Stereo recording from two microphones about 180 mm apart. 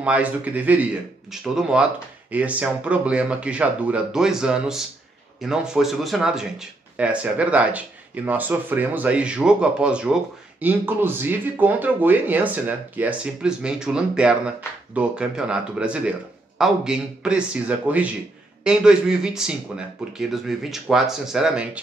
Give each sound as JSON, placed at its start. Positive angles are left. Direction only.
{"t": 0.0, "sound": "speech", "side_deg": -5}